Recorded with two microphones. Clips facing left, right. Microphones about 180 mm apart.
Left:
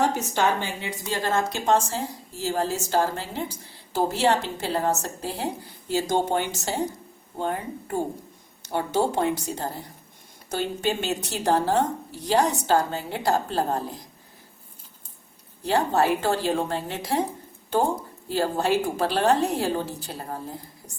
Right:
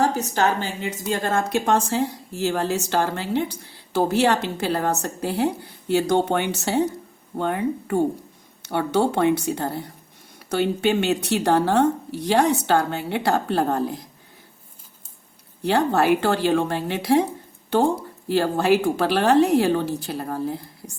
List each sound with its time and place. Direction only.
0.0 s a woman's voice: 35° right (ahead or behind)
1.3 s a woman's voice: 55° right (ahead or behind)
15.6 s a woman's voice: 70° right (ahead or behind)
18.3 s a woman's voice: 75° right (ahead or behind)